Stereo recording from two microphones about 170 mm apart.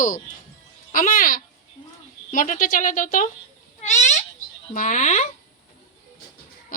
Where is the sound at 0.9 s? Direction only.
55° left (ahead or behind).